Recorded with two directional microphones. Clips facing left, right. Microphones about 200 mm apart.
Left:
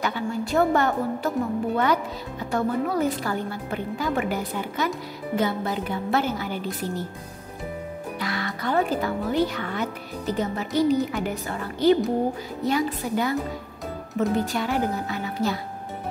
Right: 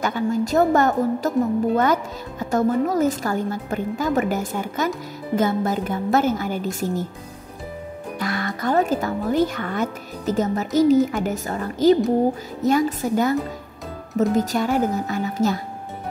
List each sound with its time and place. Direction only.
0.0 s a woman's voice: 45° right (ahead or behind)
2.5 s a woman's voice: 45° right (ahead or behind)
8.2 s a woman's voice: 45° right (ahead or behind)